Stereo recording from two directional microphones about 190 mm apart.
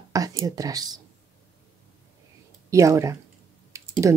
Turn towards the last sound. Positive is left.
turn(degrees=-15)  # may be behind; listen again after turning